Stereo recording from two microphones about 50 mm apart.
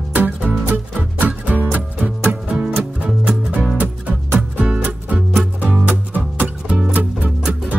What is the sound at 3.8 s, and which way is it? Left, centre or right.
Music, right.